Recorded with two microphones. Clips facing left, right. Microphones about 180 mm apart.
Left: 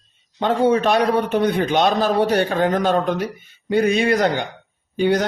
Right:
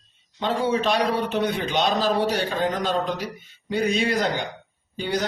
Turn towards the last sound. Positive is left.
turn(degrees=60)  # may be behind; listen again after turning